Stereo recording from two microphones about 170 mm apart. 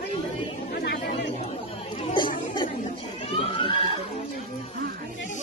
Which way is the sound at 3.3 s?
30° left (ahead or behind).